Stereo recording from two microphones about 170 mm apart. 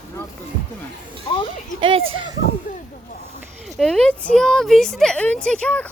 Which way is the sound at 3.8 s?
5° left (ahead or behind).